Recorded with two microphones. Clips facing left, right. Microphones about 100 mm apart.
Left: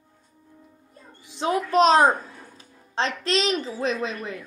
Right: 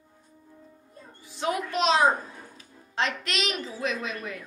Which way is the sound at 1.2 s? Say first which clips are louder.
Left 2 dB; 20° left (ahead or behind).